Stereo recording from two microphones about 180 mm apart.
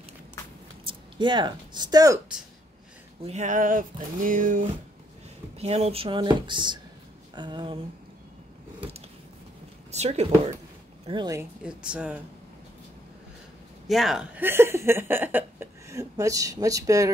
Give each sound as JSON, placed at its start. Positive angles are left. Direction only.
{"t": 0.8, "sound": "speech", "side_deg": -25}
{"t": 3.3, "sound": "a sound", "side_deg": -40}
{"t": 5.6, "sound": "speech", "side_deg": -35}
{"t": 9.8, "sound": "speech", "side_deg": -40}
{"t": 11.1, "sound": "speech", "side_deg": -20}
{"t": 11.6, "sound": "speech", "side_deg": -5}
{"t": 13.8, "sound": "speech", "side_deg": 0}